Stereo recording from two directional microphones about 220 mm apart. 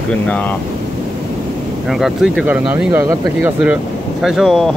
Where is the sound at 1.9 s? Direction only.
Centre (ahead or behind).